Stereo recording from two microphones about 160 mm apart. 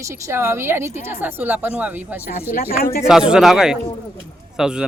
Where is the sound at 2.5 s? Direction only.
65° left (ahead or behind).